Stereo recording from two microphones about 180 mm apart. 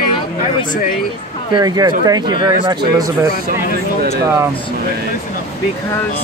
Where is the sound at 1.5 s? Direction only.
20° right (ahead or behind).